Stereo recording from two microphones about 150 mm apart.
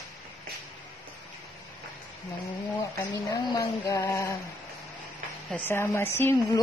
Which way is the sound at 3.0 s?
25° left (ahead or behind).